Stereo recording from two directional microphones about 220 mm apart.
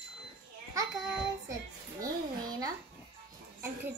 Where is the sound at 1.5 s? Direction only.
15° right (ahead or behind).